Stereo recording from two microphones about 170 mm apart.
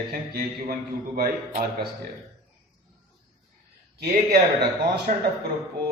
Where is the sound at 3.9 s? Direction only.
65° right (ahead or behind).